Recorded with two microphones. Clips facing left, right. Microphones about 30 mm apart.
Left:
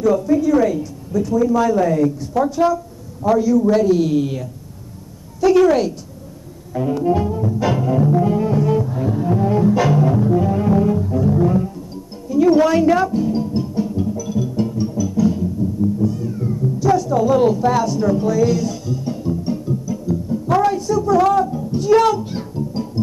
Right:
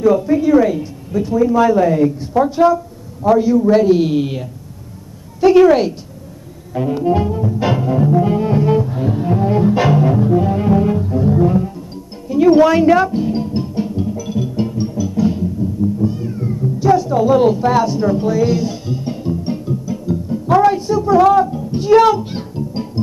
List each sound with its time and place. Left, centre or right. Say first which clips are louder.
0.0 s speech: right 2 dB; right
3.3 s music: right 3 dB; right
12.3 s music: right 3 dB; right
16.0 s speech: right 1 dB; right